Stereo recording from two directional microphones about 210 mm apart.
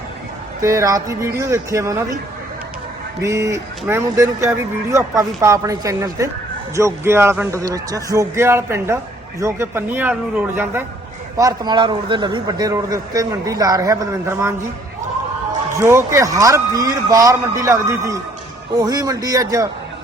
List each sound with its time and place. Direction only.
0.6 s a man's voice: 15° right (ahead or behind)
3.2 s a man's voice: 15° right (ahead or behind)
15.8 s a man's voice: 10° right (ahead or behind)